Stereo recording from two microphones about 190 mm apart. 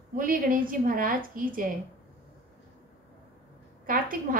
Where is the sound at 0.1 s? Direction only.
50° right (ahead or behind).